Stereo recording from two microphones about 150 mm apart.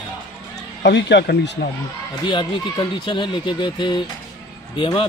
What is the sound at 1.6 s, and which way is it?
Speech, 90° left.